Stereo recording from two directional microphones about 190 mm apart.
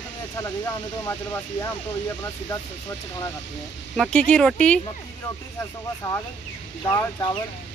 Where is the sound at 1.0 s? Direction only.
15° left (ahead or behind).